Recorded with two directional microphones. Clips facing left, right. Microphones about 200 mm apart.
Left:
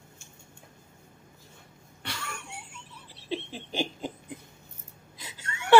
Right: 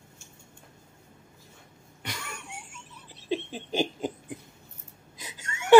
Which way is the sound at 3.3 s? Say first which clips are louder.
Right 4 dB; 15° right (ahead or behind).